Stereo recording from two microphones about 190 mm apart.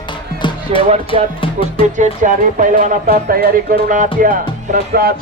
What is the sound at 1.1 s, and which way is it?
Speech, 30° left (ahead or behind).